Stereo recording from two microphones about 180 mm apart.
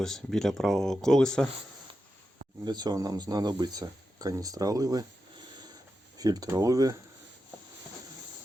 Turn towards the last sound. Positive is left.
turn(degrees=-20)  # may be behind; listen again after turning